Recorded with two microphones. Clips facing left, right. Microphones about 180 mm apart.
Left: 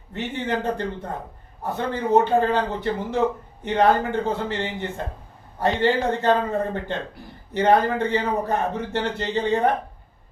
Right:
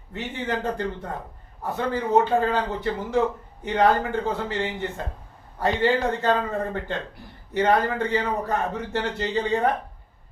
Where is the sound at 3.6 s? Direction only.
25° left (ahead or behind).